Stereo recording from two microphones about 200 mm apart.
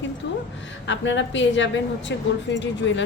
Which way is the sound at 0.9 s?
65° left (ahead or behind).